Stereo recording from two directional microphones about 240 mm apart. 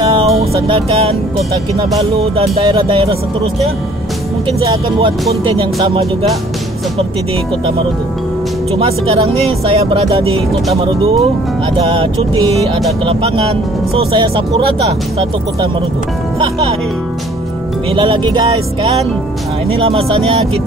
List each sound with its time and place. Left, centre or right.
0.4 s music: right
2.1 s speech: right
4.5 s speech: right
8.7 s speech: right
17.9 s speech: centre